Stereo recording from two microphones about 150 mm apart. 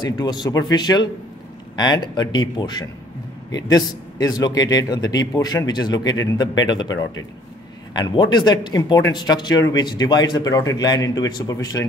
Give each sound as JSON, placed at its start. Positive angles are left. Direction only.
{"t": 0.0, "sound": "a man's voice", "side_deg": 30}
{"t": 2.1, "sound": "a man's voice", "side_deg": 30}